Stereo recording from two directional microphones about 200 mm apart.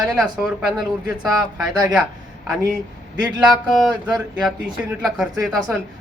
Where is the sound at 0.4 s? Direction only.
Centre (ahead or behind).